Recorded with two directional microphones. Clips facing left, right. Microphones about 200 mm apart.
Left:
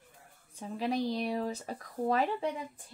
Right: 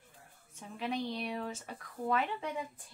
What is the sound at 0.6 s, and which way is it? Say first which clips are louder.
Speech: left 5 dB; 35° left (ahead or behind).